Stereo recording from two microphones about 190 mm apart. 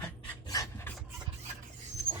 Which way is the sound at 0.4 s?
20° left (ahead or behind).